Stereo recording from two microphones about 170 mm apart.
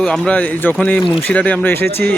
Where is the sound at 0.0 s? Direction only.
5° left (ahead or behind).